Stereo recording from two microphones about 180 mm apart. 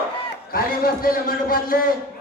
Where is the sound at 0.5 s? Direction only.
55° left (ahead or behind).